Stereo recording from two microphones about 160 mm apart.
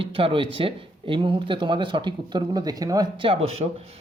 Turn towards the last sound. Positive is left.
turn(degrees=-40)  # may be behind; listen again after turning